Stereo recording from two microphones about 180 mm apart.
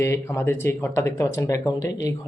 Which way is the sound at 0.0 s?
15° left (ahead or behind).